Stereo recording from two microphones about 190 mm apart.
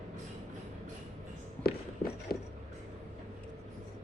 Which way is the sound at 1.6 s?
55° left (ahead or behind).